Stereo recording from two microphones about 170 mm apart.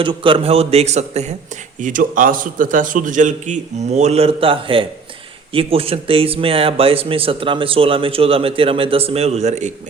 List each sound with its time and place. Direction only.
0.0 s speech: 30° right (ahead or behind)
1.8 s a man's voice: 50° right (ahead or behind)